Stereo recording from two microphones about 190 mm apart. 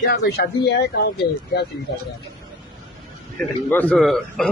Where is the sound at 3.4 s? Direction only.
10° left (ahead or behind).